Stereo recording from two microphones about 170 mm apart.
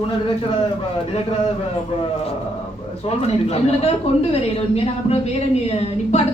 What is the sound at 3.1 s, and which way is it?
Speech, 35° left (ahead or behind).